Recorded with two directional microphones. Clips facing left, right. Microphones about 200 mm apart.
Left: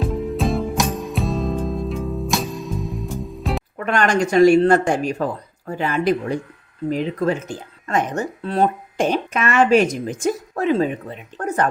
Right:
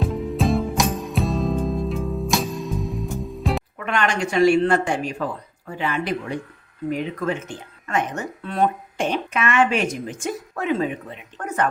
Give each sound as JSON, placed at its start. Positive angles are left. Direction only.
{"t": 0.0, "sound": "music", "side_deg": 0}
{"t": 3.8, "sound": "speech", "side_deg": 40}